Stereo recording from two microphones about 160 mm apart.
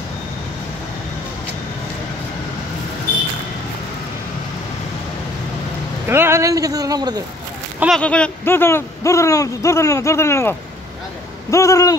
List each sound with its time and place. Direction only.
6.0 s speech: 15° right (ahead or behind)
8.0 s speech: 5° left (ahead or behind)
11.5 s a sound: 20° left (ahead or behind)